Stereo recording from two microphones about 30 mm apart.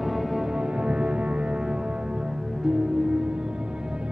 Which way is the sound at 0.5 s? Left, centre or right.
Right.